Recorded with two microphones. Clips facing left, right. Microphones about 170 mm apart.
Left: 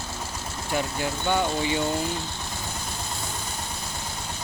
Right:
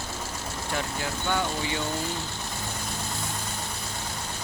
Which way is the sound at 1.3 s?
15° left (ahead or behind).